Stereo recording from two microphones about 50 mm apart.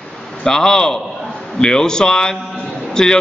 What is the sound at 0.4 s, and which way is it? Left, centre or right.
A man's voice, centre.